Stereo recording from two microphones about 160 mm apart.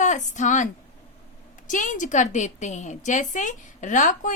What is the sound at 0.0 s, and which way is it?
A woman's voice, 50° left (ahead or behind).